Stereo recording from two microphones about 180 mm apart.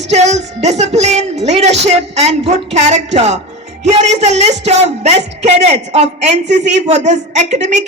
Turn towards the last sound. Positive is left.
turn(degrees=-40)  # may be behind; listen again after turning